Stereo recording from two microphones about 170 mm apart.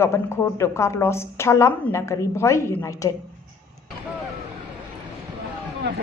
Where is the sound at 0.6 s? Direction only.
15° left (ahead or behind).